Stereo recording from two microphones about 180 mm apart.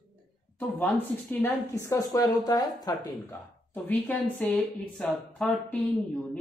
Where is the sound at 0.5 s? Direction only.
10° left (ahead or behind).